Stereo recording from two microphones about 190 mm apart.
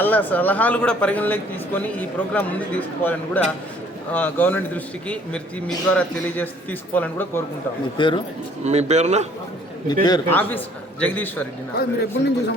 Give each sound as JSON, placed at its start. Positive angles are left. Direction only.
{"t": 0.0, "sound": "speech", "side_deg": 10}
{"t": 7.9, "sound": "speech", "side_deg": 25}
{"t": 8.6, "sound": "speech", "side_deg": -35}
{"t": 9.9, "sound": "speech", "side_deg": 20}
{"t": 11.0, "sound": "speech", "side_deg": 10}
{"t": 11.8, "sound": "a man's voice", "side_deg": 55}